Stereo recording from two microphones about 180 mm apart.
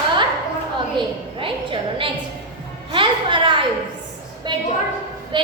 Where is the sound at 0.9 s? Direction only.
30° right (ahead or behind).